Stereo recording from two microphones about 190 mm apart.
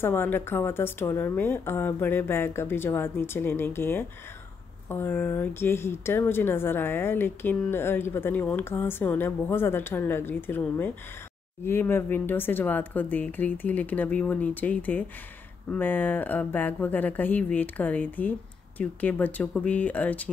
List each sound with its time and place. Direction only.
0.0 s speech: 10° left (ahead or behind)